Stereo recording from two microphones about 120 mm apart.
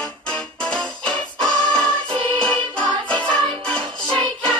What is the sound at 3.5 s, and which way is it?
Music, 45° right (ahead or behind).